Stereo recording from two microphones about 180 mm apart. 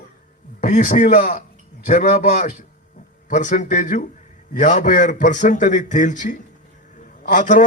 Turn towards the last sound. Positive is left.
turn(degrees=45)  # may be behind; listen again after turning